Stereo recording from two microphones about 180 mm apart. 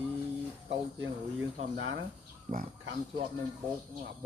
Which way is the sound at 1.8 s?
90° right.